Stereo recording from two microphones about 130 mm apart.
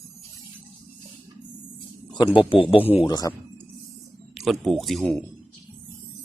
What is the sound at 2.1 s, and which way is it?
Speech, 40° left (ahead or behind).